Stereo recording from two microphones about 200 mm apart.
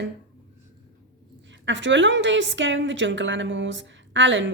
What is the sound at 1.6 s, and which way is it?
A woman's voice, 65° right (ahead or behind).